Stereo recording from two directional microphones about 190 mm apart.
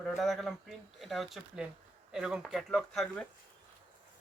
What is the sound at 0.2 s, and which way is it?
Speech, centre (ahead or behind).